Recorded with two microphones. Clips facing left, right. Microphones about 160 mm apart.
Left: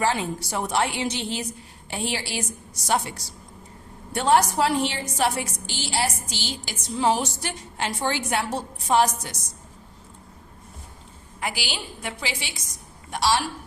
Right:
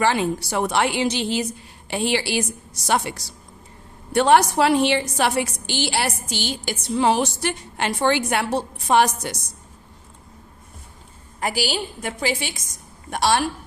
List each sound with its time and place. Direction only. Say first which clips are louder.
0.0 s a woman's voice: right 4 dB; 75° right (ahead or behind)
11.3 s a woman's voice: right 7 dB; 40° right (ahead or behind)